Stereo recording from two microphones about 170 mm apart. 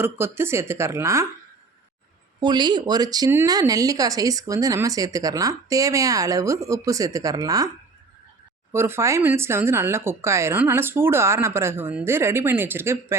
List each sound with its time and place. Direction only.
0.0 s speech: 15° right (ahead or behind)
2.4 s speech: 25° right (ahead or behind)
8.7 s speech: 15° right (ahead or behind)